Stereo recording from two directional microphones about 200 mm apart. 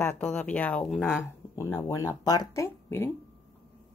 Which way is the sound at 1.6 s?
15° left (ahead or behind).